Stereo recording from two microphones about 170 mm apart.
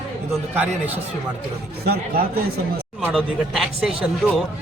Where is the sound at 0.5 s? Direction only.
10° right (ahead or behind).